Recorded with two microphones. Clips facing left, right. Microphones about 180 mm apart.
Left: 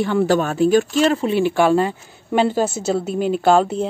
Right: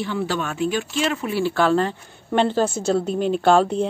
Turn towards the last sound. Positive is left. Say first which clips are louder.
# left 1 dB
turn(degrees=5)  # may be behind; listen again after turning